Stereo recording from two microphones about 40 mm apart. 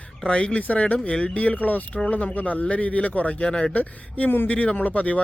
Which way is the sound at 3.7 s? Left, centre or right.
Left.